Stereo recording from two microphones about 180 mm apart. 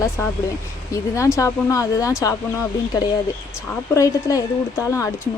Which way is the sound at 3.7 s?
15° left (ahead or behind).